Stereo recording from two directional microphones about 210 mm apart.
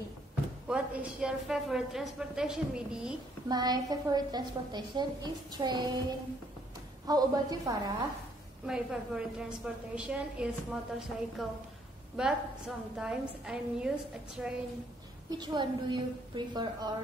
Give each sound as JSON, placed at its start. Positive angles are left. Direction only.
{"t": 0.7, "sound": "a woman's voice", "side_deg": -5}
{"t": 3.4, "sound": "a woman's voice", "side_deg": -20}
{"t": 7.1, "sound": "a woman's voice", "side_deg": -20}
{"t": 8.6, "sound": "a woman's voice", "side_deg": -5}
{"t": 15.3, "sound": "a woman's voice", "side_deg": -20}